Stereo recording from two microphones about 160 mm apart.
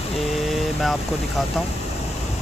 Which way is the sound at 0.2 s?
Centre (ahead or behind).